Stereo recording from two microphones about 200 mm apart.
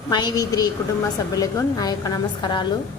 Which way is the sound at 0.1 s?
20° left (ahead or behind).